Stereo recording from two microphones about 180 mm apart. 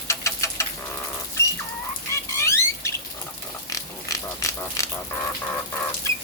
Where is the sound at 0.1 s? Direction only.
15° left (ahead or behind).